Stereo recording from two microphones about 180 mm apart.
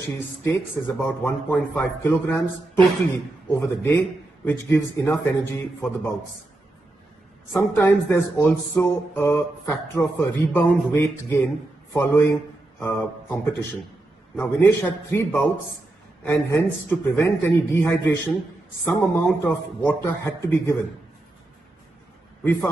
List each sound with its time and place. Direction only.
0.0 s speech: 10° left (ahead or behind)
3.4 s speech: 10° left (ahead or behind)
7.5 s speech: 10° left (ahead or behind)
22.4 s a man's voice: 10° left (ahead or behind)